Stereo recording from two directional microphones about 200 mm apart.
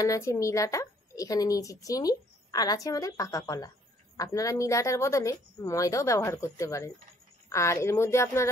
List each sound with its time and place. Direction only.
0.0 s a woman's voice: 15° left (ahead or behind)